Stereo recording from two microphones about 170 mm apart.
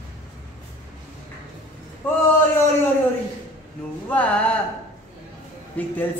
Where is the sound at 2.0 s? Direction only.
10° left (ahead or behind).